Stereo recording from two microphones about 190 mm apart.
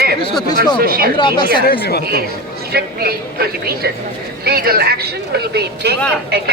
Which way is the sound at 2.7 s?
55° right (ahead or behind).